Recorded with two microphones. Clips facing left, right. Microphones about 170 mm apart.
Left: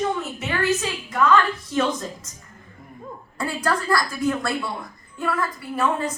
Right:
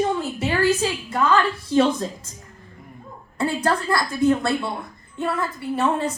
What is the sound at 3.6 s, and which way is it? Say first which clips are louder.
A woman's voice: left 2 dB; 30° right (ahead or behind).